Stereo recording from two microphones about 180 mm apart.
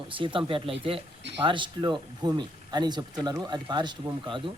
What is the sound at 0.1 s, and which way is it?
Speech, 30° right (ahead or behind).